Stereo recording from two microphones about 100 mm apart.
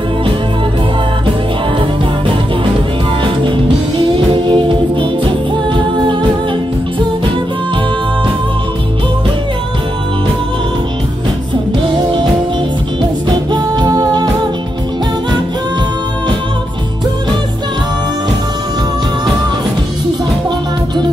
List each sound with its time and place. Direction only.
4.3 s music: 55° right (ahead or behind)
13.3 s music: 45° right (ahead or behind)